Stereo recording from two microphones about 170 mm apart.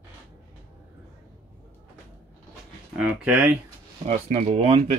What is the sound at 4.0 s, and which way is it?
Speech, 45° right (ahead or behind).